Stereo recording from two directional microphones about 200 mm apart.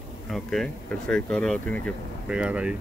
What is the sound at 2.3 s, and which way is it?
Speech, 5° right (ahead or behind).